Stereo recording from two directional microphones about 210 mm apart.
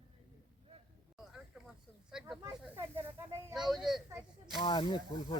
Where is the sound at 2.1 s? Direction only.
5° right (ahead or behind).